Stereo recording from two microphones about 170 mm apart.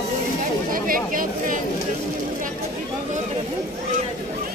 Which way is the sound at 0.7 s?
55° right (ahead or behind).